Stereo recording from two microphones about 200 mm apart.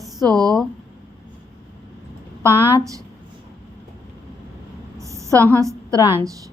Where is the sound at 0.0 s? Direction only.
20° right (ahead or behind).